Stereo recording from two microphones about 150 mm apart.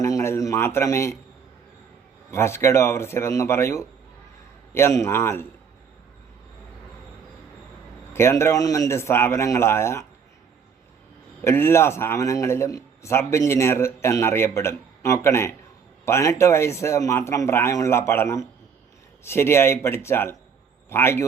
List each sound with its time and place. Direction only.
0.0 s a sound: 20° left (ahead or behind)
2.3 s a man's voice: 15° left (ahead or behind)
8.1 s a man's voice: 15° left (ahead or behind)
11.4 s a man's voice: 15° left (ahead or behind)